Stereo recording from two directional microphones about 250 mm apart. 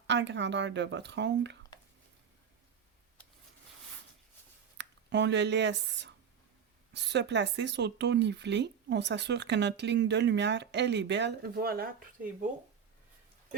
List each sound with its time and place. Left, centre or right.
0.1 s speech: right
4.8 s speech: right